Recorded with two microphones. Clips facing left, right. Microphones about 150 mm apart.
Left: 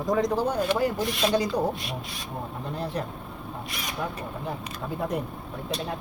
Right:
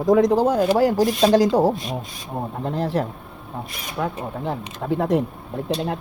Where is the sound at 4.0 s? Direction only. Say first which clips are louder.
Right 8 dB; 70° right (ahead or behind).